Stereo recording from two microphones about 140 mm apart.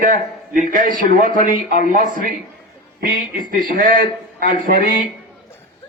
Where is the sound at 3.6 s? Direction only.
75° right (ahead or behind).